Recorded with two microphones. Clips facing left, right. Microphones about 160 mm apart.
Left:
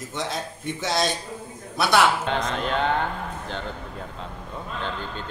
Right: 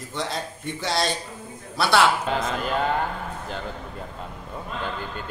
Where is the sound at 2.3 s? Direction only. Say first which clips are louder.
Even; 5° right (ahead or behind).